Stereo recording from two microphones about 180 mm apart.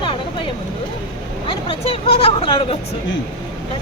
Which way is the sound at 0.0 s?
30° left (ahead or behind).